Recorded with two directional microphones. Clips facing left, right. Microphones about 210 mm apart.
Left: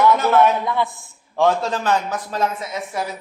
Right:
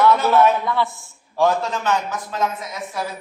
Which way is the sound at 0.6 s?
15° left (ahead or behind).